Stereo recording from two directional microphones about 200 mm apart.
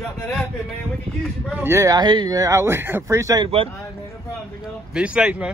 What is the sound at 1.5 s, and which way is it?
Speech, 10° right (ahead or behind).